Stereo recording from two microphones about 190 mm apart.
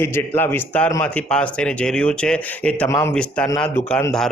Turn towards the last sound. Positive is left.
turn(degrees=5)  # may be behind; listen again after turning